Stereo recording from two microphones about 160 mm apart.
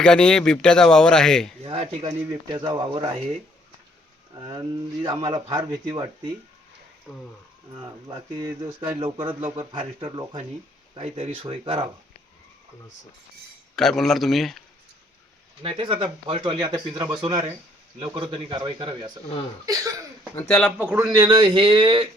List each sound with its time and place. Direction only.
0.0 s speech: 5° left (ahead or behind)
1.6 s speech: 40° right (ahead or behind)
4.4 s speech: 25° right (ahead or behind)
7.8 s speech: 25° right (ahead or behind)
13.7 s speech: 5° left (ahead or behind)
15.6 s speech: 35° right (ahead or behind)
20.5 s speech: 5° left (ahead or behind)
20.7 s a man's voice: 10° right (ahead or behind)
21.1 s speech: 25° right (ahead or behind)